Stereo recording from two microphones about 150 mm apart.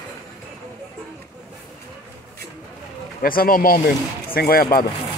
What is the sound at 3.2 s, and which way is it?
Speech, 75° left (ahead or behind).